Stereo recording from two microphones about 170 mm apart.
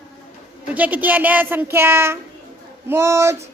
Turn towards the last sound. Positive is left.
turn(degrees=-15)  # may be behind; listen again after turning